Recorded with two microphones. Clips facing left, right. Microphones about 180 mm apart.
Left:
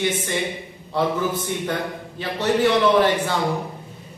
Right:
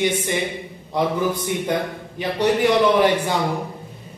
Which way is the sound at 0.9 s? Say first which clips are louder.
Right 1 dB; 15° right (ahead or behind).